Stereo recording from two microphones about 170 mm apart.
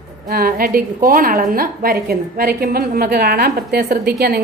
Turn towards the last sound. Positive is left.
turn(degrees=-65)  # may be behind; listen again after turning